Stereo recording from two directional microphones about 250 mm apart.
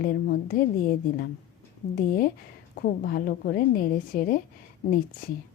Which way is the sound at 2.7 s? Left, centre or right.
Left.